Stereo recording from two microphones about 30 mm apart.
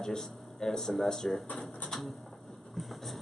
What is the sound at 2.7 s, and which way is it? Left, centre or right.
Vehicle, centre.